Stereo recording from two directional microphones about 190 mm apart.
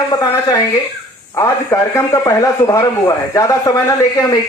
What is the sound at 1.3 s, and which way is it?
A man's voice, 15° left (ahead or behind).